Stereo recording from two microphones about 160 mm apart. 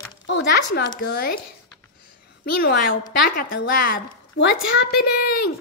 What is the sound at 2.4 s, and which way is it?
Speech, 80° left.